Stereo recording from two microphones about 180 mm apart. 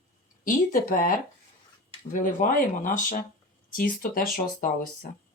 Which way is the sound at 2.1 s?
50° left (ahead or behind).